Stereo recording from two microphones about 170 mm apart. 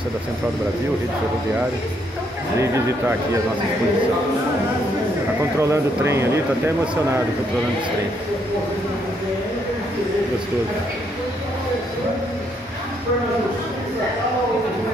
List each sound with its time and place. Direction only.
2.6 s speech: 15° right (ahead or behind)
5.6 s speech: 15° right (ahead or behind)